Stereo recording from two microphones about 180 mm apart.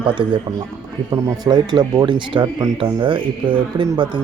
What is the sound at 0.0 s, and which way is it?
Speech, 25° right (ahead or behind).